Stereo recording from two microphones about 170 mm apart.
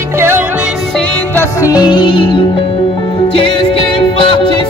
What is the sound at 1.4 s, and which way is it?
Music, 20° left (ahead or behind).